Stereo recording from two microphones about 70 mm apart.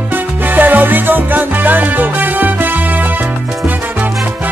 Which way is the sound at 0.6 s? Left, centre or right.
Right.